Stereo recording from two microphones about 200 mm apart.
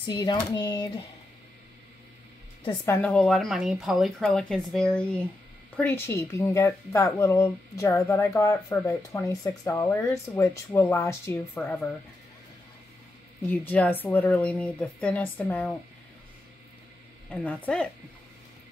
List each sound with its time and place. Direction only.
0.0 s speech: 20° left (ahead or behind)
2.8 s speech: 10° left (ahead or behind)
13.5 s speech: 10° left (ahead or behind)
17.3 s speech: 5° left (ahead or behind)